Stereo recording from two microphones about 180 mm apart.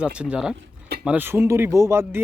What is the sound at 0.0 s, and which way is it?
Speech, 5° right (ahead or behind).